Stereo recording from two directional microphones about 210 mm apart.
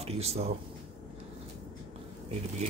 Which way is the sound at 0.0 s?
30° right (ahead or behind).